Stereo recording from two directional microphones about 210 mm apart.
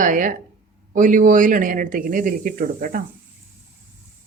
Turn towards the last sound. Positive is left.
turn(degrees=-40)  # may be behind; listen again after turning